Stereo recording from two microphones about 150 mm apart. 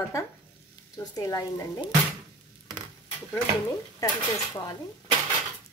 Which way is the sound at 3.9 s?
25° left (ahead or behind).